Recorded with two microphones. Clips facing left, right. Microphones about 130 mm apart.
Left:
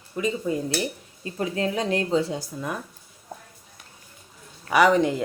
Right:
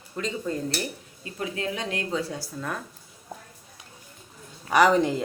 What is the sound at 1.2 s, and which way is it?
Speech, 35° left (ahead or behind).